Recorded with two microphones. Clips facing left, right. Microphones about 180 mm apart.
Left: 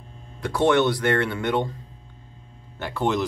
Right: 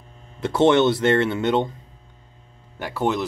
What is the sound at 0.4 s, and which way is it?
Speech, 25° right (ahead or behind).